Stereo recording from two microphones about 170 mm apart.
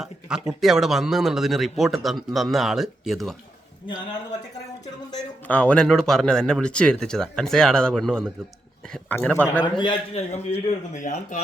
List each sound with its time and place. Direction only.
0.0 s speech: 5° right (ahead or behind)
5.5 s a man's voice: 5° left (ahead or behind)
9.7 s speech: 30° left (ahead or behind); by 11.3 s 45° left (ahead or behind)